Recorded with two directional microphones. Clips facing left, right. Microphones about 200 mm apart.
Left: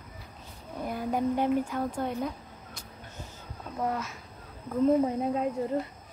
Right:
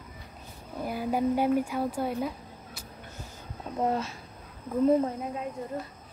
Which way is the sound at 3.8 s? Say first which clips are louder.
Right 3 dB; 30° right (ahead or behind).